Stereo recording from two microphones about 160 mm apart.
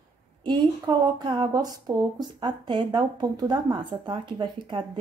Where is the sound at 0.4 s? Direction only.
25° right (ahead or behind).